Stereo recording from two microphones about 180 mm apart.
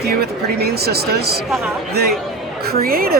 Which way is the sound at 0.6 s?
60° right (ahead or behind).